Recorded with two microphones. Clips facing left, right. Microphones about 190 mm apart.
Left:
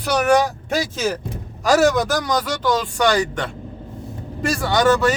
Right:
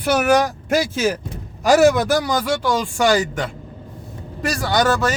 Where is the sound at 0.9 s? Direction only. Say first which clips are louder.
Right 2 dB; 10° right (ahead or behind).